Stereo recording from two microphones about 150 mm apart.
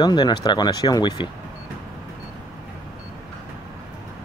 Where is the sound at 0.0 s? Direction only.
30° left (ahead or behind).